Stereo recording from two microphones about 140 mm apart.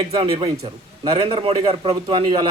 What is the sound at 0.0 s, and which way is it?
Speech, 35° right (ahead or behind).